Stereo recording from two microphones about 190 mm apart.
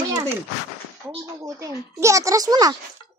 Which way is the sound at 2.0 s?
15° right (ahead or behind).